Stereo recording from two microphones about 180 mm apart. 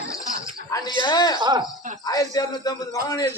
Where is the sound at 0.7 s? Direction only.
25° left (ahead or behind).